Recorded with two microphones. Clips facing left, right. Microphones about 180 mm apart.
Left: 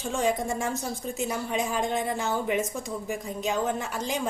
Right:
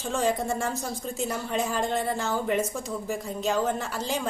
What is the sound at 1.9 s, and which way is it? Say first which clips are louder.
Speech: even; 15° left (ahead or behind).